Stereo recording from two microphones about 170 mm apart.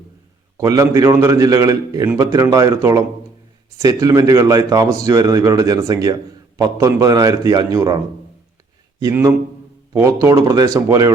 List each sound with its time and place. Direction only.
0.5 s a man's voice: 20° right (ahead or behind)